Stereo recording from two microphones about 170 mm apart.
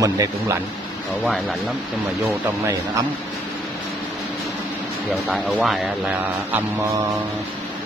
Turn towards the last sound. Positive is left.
turn(degrees=-10)  # may be behind; listen again after turning